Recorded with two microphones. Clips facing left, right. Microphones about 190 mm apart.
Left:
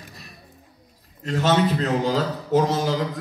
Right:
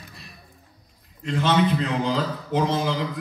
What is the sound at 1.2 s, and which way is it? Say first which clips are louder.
A man's voice: left 1 dB; 40° left (ahead or behind).